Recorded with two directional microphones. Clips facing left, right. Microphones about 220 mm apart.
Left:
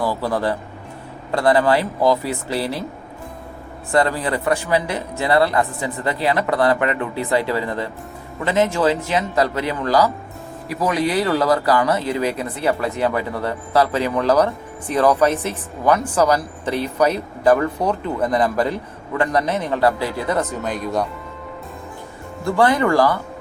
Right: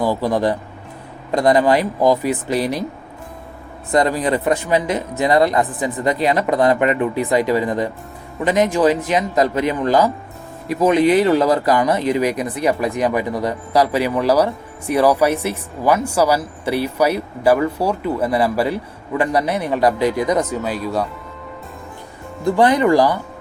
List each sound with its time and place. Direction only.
0.0 s speech: 15° right (ahead or behind)
3.9 s speech: 20° right (ahead or behind)
22.4 s speech: 20° right (ahead or behind)